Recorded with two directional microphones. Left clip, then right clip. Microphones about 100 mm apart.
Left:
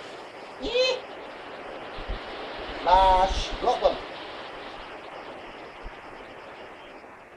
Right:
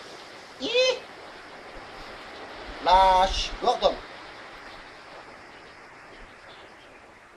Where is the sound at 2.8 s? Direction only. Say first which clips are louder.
Right 1 dB; 15° right (ahead or behind).